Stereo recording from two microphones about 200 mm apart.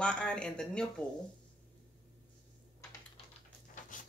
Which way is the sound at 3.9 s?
40° left (ahead or behind).